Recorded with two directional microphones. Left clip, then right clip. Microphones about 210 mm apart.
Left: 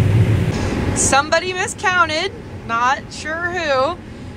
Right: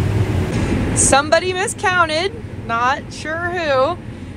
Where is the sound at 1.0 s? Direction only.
5° left (ahead or behind).